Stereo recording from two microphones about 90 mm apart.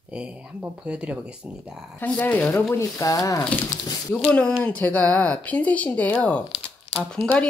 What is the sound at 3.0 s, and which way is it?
Speech, 40° left (ahead or behind).